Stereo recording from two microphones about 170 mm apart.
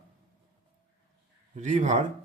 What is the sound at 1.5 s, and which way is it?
Speech, 45° right (ahead or behind).